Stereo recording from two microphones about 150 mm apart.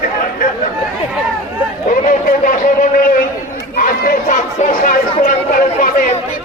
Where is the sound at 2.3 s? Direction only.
65° left (ahead or behind).